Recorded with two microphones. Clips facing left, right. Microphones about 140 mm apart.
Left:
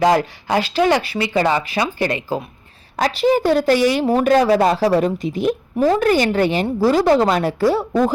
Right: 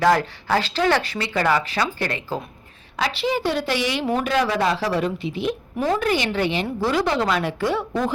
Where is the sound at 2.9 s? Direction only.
45° left (ahead or behind).